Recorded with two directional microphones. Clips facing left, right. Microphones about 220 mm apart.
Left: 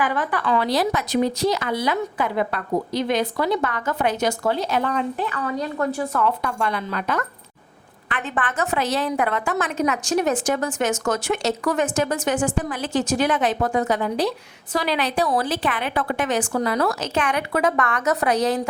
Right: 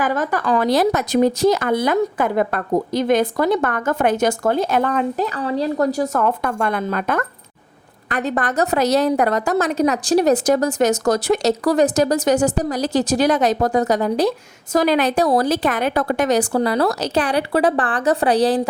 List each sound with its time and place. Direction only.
0.0 s speech: 40° right (ahead or behind)
8.1 s a woman's voice: 40° right (ahead or behind)